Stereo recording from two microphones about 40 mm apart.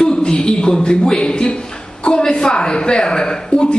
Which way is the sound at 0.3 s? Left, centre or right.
Centre.